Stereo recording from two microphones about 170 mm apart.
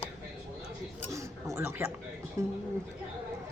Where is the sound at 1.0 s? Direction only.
15° right (ahead or behind).